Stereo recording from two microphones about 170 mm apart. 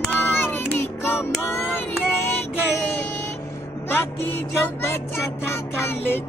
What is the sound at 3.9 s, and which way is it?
Speech, 10° left (ahead or behind).